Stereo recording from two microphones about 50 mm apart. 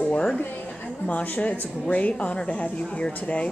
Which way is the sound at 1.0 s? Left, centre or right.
Left.